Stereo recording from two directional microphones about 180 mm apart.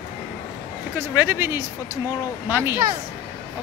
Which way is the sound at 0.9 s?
10° right (ahead or behind).